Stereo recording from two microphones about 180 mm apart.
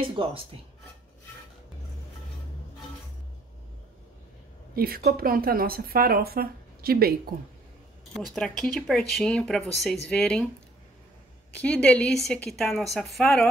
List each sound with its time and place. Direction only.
0.0 s speech: 30° right (ahead or behind)
4.7 s speech: 55° right (ahead or behind)
8.1 s speech: centre (ahead or behind)
11.5 s speech: 5° left (ahead or behind)